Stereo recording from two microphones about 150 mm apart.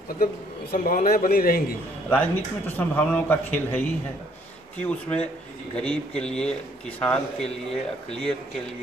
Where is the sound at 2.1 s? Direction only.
15° left (ahead or behind).